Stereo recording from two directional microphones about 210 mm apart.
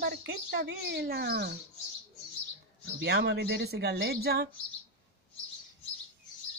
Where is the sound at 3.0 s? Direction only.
50° right (ahead or behind).